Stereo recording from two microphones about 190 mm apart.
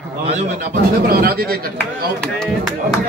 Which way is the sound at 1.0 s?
55° right (ahead or behind).